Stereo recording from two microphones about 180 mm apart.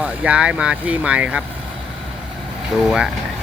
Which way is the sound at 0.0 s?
5° right (ahead or behind).